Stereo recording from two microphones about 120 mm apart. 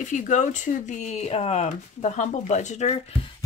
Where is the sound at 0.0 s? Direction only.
90° left.